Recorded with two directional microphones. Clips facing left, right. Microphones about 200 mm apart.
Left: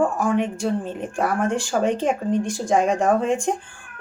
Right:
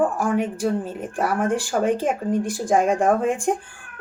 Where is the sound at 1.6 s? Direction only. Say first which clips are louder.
Even; 55° right (ahead or behind).